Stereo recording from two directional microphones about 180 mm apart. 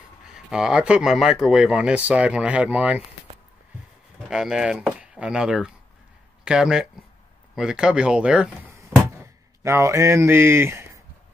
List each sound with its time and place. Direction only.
0.2 s speech: 5° right (ahead or behind)
4.3 s speech: 5° right (ahead or behind)